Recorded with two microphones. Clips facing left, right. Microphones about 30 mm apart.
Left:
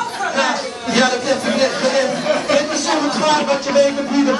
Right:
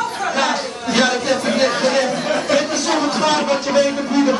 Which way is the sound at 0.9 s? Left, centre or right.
Centre.